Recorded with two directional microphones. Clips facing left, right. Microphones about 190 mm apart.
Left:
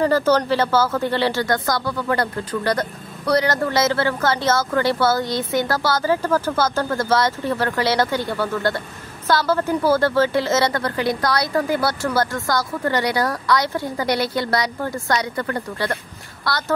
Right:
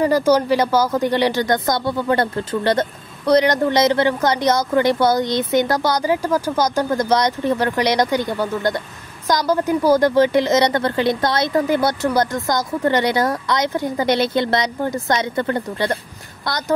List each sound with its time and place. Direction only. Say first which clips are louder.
0.0 s a woman's voice: right 2 dB; 15° right (ahead or behind)